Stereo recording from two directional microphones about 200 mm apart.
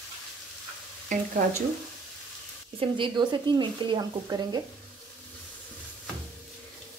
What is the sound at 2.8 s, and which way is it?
Speech, 25° right (ahead or behind).